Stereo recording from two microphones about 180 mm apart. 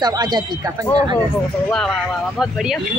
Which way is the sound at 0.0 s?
25° right (ahead or behind).